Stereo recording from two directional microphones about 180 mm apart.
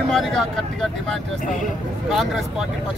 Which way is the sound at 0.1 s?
Centre (ahead or behind).